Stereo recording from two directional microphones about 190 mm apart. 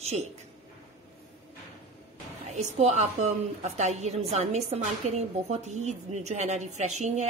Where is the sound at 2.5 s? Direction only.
35° right (ahead or behind).